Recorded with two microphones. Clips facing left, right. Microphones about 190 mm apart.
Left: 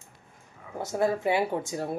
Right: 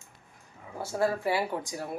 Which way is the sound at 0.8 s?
20° left (ahead or behind).